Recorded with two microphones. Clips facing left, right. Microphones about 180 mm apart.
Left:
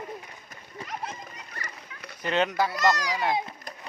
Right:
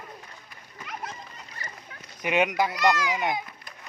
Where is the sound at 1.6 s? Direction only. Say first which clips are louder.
Left 1 dB; 65° left (ahead or behind).